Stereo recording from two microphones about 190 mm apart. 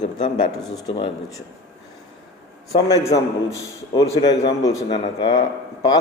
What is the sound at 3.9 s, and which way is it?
A man's voice, 20° left (ahead or behind).